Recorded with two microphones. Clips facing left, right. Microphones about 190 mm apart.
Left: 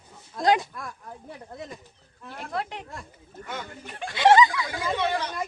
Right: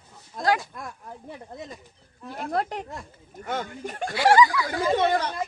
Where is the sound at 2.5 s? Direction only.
45° right (ahead or behind).